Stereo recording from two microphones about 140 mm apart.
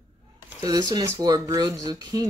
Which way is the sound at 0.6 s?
30° right (ahead or behind).